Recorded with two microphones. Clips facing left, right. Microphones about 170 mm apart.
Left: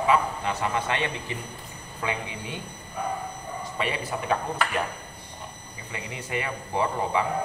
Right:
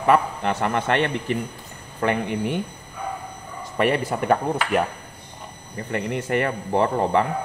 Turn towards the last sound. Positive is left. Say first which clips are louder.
# right 6 dB
turn(degrees=-55)  # may be behind; listen again after turning